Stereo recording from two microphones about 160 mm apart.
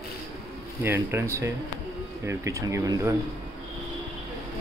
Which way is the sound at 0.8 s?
15° right (ahead or behind).